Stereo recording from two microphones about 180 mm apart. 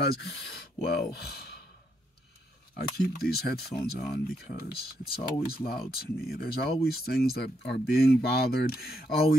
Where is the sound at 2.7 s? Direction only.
60° left (ahead or behind).